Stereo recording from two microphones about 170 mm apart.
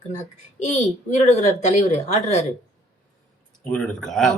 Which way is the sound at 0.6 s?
40° left (ahead or behind).